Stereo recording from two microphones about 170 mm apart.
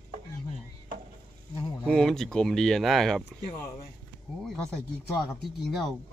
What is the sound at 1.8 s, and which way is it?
Speech, 5° left (ahead or behind).